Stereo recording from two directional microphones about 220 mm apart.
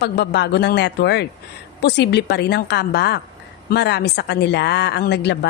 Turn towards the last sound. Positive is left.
turn(degrees=50)  # may be behind; listen again after turning